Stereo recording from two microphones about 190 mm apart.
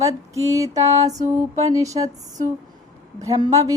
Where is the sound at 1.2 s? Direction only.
35° right (ahead or behind).